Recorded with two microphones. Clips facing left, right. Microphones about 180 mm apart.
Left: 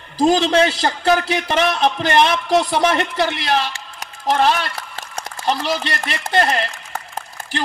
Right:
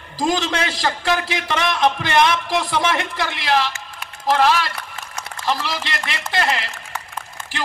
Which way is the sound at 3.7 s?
35° left (ahead or behind).